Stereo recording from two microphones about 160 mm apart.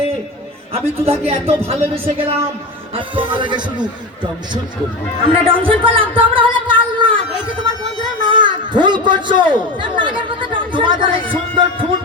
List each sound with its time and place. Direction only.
0.7 s a man's voice: 40° right (ahead or behind)
5.3 s a man's voice: 35° right (ahead or behind)
8.2 s a man's voice: 30° right (ahead or behind)